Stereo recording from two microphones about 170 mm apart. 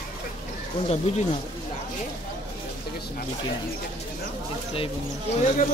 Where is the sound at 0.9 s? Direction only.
40° left (ahead or behind).